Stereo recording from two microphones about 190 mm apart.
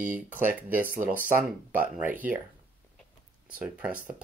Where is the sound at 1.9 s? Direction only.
10° right (ahead or behind).